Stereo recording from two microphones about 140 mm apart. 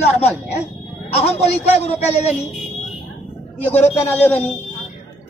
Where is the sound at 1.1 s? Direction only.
50° left (ahead or behind).